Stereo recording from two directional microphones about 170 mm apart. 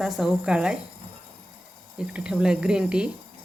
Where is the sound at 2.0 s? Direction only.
5° right (ahead or behind).